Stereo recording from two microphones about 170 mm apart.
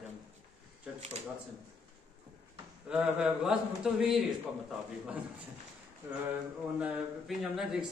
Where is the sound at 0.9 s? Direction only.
40° right (ahead or behind).